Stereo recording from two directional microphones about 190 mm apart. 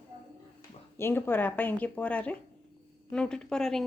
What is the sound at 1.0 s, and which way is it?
A woman's voice, 10° left (ahead or behind).